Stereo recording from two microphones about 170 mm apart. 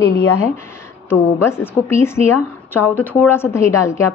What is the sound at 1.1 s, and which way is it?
A woman's voice, 15° left (ahead or behind).